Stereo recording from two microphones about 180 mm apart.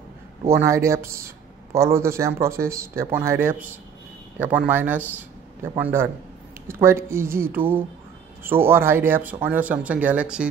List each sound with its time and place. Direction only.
0.5 s speech: 15° right (ahead or behind)